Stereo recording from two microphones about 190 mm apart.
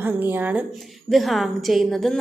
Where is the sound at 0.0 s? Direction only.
10° right (ahead or behind).